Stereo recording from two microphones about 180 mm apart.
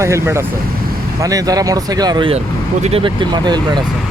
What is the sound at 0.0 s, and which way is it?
Speech, 15° right (ahead or behind).